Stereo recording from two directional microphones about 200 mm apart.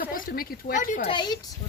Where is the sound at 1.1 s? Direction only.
20° left (ahead or behind).